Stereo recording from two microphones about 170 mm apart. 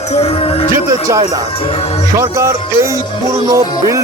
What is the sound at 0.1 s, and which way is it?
Speech, 40° left (ahead or behind).